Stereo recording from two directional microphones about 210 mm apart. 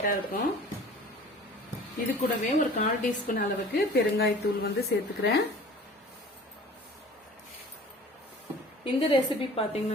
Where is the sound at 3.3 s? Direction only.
45° left (ahead or behind).